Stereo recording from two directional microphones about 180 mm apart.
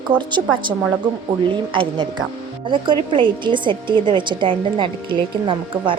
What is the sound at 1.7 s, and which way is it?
Speech, 25° right (ahead or behind).